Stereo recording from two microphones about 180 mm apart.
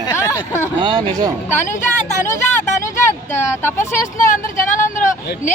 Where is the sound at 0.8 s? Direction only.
25° right (ahead or behind).